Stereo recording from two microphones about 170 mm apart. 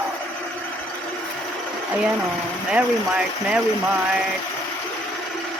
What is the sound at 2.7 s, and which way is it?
Speech, 5° right (ahead or behind).